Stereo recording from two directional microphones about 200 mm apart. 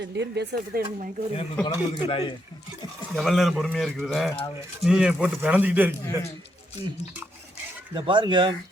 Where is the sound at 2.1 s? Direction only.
30° left (ahead or behind).